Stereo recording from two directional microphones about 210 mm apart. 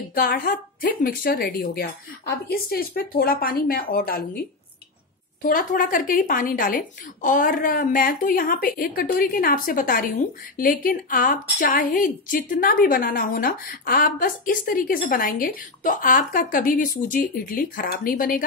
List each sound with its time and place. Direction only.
0.1 s speech: 45° left (ahead or behind)
5.4 s a woman's voice: 40° left (ahead or behind)